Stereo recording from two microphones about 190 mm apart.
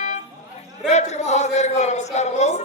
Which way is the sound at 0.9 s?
35° left (ahead or behind).